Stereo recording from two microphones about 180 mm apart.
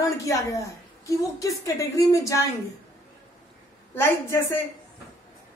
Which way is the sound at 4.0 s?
15° left (ahead or behind).